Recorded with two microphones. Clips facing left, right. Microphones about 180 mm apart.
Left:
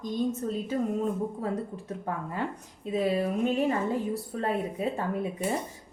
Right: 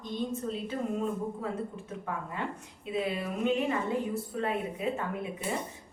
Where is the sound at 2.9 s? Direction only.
40° left (ahead or behind).